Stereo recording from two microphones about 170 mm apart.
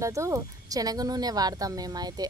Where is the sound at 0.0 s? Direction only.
15° right (ahead or behind).